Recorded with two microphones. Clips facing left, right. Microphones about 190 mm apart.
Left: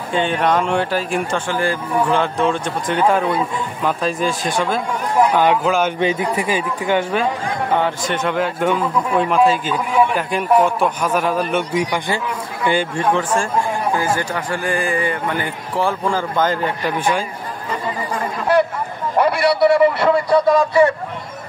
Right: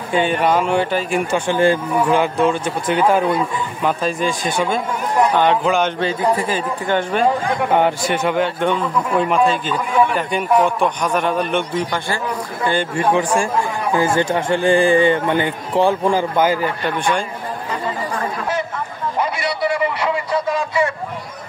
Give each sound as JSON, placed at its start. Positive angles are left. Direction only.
{"t": 0.1, "sound": "a man's voice", "side_deg": -5}
{"t": 1.5, "sound": "a man's voice", "side_deg": -20}
{"t": 2.0, "sound": "a man's voice", "side_deg": -10}
{"t": 5.9, "sound": "speech", "side_deg": 15}
{"t": 7.8, "sound": "a man's voice", "side_deg": -10}
{"t": 13.1, "sound": "speech", "side_deg": -15}
{"t": 13.9, "sound": "a man's voice", "side_deg": -25}
{"t": 19.1, "sound": "a sound", "side_deg": 60}
{"t": 20.0, "sound": "a man's voice", "side_deg": 40}